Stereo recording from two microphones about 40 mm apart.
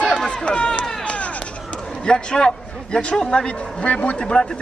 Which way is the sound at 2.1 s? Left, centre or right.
Left.